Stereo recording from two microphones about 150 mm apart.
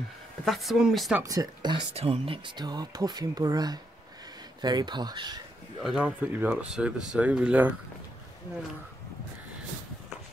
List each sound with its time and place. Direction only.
0.5 s speech: centre (ahead or behind)
1.2 s speech: 25° right (ahead or behind)
5.8 s speech: 5° right (ahead or behind)